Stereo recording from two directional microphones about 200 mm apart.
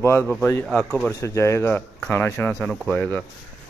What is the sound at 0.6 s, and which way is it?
Speech, centre (ahead or behind).